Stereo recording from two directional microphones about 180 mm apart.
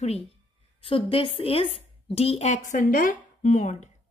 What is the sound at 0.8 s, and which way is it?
A woman's voice, 30° left (ahead or behind).